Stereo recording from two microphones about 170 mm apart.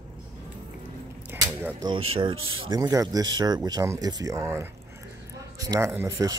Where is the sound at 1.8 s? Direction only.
30° right (ahead or behind).